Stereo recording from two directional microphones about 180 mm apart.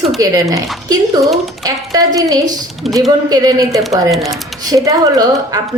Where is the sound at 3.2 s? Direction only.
20° right (ahead or behind).